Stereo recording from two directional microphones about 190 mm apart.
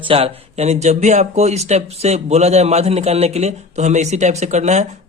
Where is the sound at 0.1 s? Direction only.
30° right (ahead or behind).